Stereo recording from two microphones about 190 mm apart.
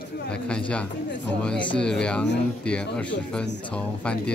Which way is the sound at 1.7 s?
5° left (ahead or behind).